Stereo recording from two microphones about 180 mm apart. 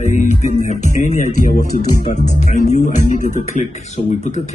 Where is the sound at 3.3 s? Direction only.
45° left (ahead or behind).